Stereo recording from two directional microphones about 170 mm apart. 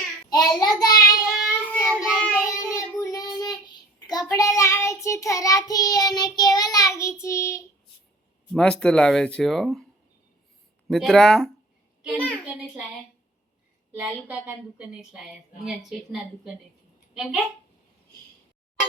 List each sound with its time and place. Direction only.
0.3 s child singing: 25° left (ahead or behind)
2.0 s child singing: 10° left (ahead or behind)
2.5 s child singing: 20° left (ahead or behind)
8.5 s a woman's voice: 5° left (ahead or behind)
10.8 s a woman's voice: 5° left (ahead or behind)
13.9 s a woman's voice: 10° right (ahead or behind)